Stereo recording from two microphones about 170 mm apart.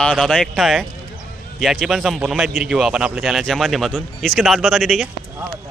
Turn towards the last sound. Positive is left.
turn(degrees=0)  # may be behind; listen again after turning